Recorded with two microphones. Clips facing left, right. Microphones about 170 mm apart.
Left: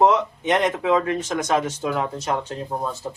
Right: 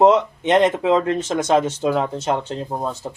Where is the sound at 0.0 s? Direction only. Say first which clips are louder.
Right 4 dB; 25° right (ahead or behind).